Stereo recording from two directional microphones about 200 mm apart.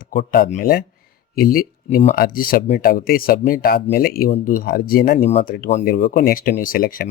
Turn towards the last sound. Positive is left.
turn(degrees=45)  # may be behind; listen again after turning